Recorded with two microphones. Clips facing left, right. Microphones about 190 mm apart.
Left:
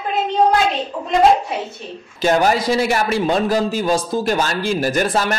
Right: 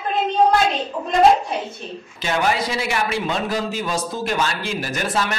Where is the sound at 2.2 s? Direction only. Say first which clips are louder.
Left 6 dB; 40° left (ahead or behind).